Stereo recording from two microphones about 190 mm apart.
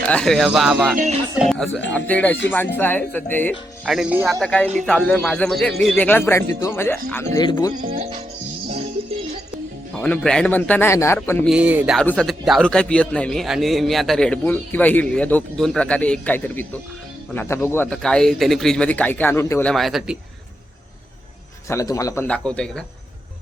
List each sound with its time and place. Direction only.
0.0 s a man's voice: 5° left (ahead or behind)
0.9 s music: 40° right (ahead or behind)
1.4 s a man's voice: centre (ahead or behind)
3.8 s speech: 5° right (ahead or behind)
4.4 s a man's voice: 5° left (ahead or behind)
9.9 s a man's voice: 5° left (ahead or behind)
11.4 s speech: 5° right (ahead or behind)
11.9 s a man's voice: 5° left (ahead or behind)
19.7 s a man's voice: centre (ahead or behind)
21.7 s a man's voice: 15° left (ahead or behind)